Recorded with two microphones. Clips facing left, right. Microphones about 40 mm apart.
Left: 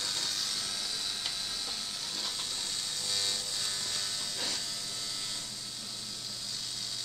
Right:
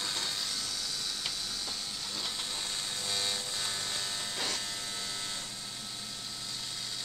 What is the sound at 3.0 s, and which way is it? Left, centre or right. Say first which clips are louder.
Electric shaver: right 1 dB; right.